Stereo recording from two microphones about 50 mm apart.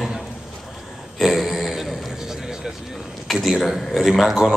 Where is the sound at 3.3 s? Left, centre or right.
Centre.